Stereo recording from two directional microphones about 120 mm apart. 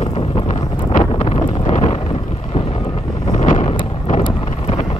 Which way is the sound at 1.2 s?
60° left (ahead or behind).